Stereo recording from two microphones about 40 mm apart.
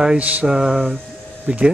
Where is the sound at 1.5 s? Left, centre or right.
Right.